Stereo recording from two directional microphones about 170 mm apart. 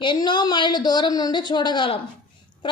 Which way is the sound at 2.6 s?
30° left (ahead or behind).